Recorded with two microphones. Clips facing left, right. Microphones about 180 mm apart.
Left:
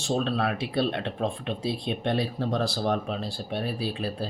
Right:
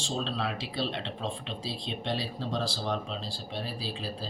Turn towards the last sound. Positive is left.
turn(degrees=60)  # may be behind; listen again after turning